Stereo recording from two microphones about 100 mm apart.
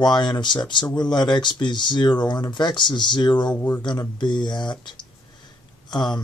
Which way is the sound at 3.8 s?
50° left (ahead or behind).